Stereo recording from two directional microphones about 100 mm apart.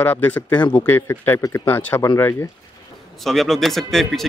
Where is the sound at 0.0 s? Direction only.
20° left (ahead or behind).